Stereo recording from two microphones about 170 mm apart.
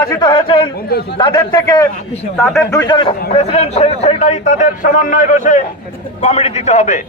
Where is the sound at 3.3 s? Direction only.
40° left (ahead or behind).